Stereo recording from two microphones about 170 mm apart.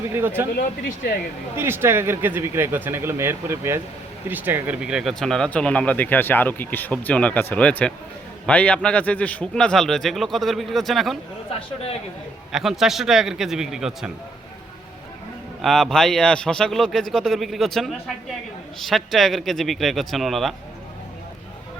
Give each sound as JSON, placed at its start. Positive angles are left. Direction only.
{"t": 0.1, "sound": "speech", "side_deg": -15}
{"t": 0.5, "sound": "speech", "side_deg": 70}
{"t": 1.5, "sound": "a man's voice", "side_deg": -15}
{"t": 12.5, "sound": "a man's voice", "side_deg": 0}
{"t": 15.6, "sound": "a man's voice", "side_deg": 0}